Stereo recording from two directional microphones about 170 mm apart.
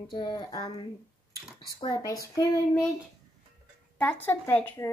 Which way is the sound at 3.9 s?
10° left (ahead or behind).